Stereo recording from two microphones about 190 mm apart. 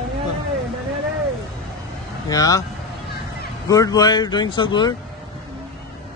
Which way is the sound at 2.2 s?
20° left (ahead or behind).